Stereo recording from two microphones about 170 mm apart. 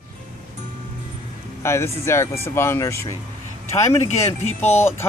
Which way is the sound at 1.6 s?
15° left (ahead or behind).